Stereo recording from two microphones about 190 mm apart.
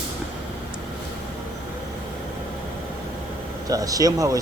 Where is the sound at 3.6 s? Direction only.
20° right (ahead or behind).